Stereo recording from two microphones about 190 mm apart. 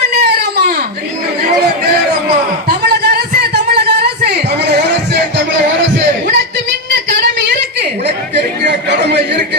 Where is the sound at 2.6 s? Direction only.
55° right (ahead or behind).